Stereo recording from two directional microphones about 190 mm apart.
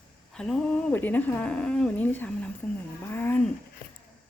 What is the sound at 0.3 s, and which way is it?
Speech, 5° left (ahead or behind).